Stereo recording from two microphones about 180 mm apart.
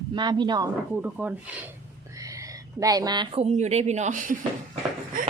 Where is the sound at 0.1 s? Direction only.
25° right (ahead or behind).